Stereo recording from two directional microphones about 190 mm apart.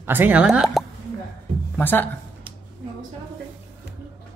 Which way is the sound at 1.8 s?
10° left (ahead or behind).